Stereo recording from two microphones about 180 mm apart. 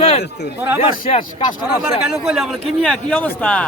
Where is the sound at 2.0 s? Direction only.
5° right (ahead or behind).